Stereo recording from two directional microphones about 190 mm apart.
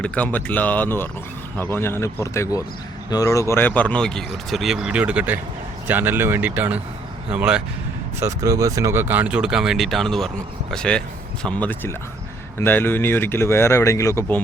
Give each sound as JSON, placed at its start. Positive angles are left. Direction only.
{"t": 0.0, "sound": "speech", "side_deg": 5}
{"t": 8.2, "sound": "speech", "side_deg": -15}